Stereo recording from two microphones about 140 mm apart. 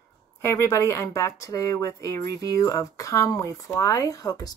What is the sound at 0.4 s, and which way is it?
Speech, 20° left (ahead or behind).